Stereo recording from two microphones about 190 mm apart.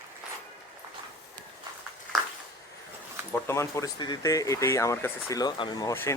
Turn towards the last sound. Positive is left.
turn(degrees=15)  # may be behind; listen again after turning